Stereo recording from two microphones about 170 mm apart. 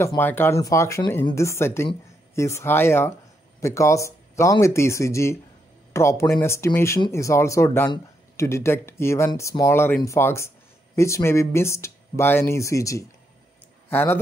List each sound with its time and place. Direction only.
0.0 s speech: 15° left (ahead or behind)